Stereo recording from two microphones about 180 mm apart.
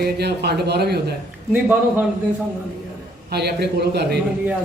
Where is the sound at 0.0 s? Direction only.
65° right (ahead or behind).